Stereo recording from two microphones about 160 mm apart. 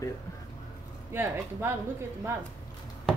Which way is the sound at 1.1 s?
15° right (ahead or behind).